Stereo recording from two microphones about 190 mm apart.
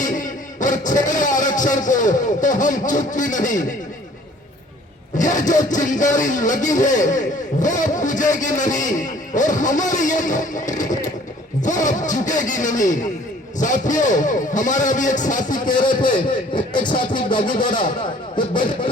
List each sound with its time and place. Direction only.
0.0 s speech: 45° left (ahead or behind)
5.1 s speech: 40° left (ahead or behind)
15.8 s a man's voice: 25° left (ahead or behind)
17.4 s speech: 45° left (ahead or behind)
18.3 s a man's voice: 25° left (ahead or behind)